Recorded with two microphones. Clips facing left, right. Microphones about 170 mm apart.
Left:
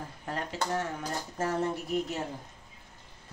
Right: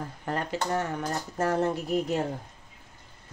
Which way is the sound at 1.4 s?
65° right (ahead or behind).